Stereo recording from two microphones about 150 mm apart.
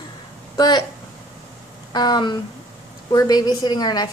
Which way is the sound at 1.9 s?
30° left (ahead or behind).